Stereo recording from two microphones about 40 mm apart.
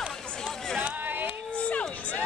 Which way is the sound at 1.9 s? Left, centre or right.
Left.